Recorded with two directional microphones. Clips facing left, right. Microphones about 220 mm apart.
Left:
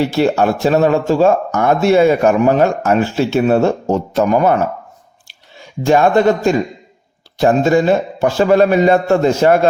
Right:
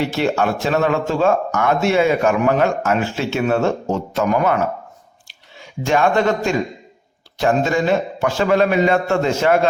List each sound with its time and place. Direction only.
0.1 s speech: 35° left (ahead or behind)
5.8 s speech: 35° left (ahead or behind)